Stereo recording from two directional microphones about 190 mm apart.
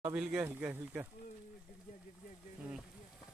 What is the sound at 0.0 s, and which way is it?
Speech, 5° right (ahead or behind).